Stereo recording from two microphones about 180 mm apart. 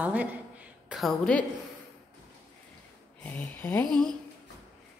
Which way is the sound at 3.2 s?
10° left (ahead or behind).